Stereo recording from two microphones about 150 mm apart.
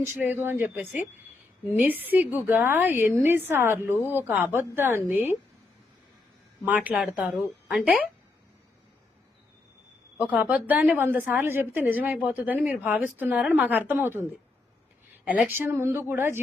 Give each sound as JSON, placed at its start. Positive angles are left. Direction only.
{"t": 0.0, "sound": "a woman's voice", "side_deg": -15}
{"t": 6.7, "sound": "a woman's voice", "side_deg": -10}
{"t": 10.2, "sound": "a woman's voice", "side_deg": -10}
{"t": 15.4, "sound": "a woman's voice", "side_deg": -15}